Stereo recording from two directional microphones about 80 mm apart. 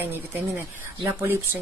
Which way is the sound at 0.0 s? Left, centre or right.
Right.